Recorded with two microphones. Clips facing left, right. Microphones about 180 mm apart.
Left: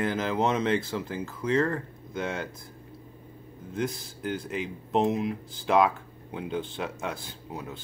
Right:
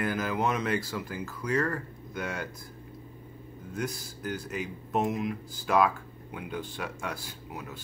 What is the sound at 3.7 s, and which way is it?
Speech, 25° left (ahead or behind).